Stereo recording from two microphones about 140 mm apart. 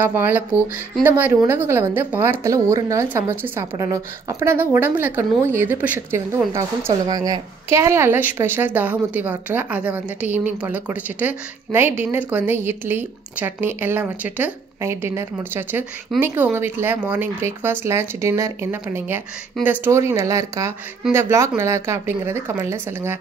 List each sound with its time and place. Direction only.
0.0 s a woman's voice: 15° right (ahead or behind)